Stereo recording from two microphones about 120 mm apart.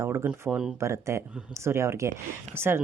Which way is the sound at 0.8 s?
25° right (ahead or behind).